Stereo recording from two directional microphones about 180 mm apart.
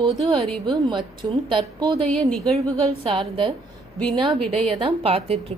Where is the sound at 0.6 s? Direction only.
25° right (ahead or behind).